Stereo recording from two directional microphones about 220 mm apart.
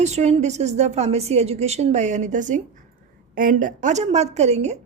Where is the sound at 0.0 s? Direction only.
30° right (ahead or behind).